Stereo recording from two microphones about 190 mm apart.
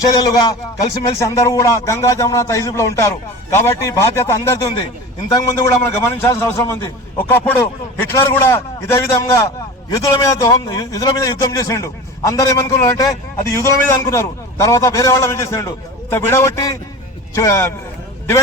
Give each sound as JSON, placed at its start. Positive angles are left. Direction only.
{"t": 0.0, "sound": "a man's voice", "side_deg": 20}